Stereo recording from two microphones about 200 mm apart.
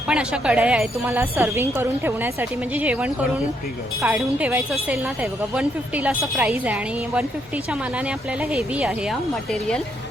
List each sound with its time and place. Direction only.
0.1 s speech: 5° right (ahead or behind)